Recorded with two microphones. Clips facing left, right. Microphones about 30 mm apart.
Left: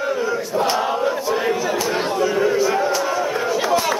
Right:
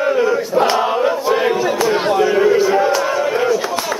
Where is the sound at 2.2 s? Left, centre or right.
Centre.